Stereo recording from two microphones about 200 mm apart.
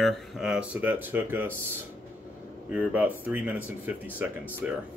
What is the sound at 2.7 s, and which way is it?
Speech, 5° right (ahead or behind).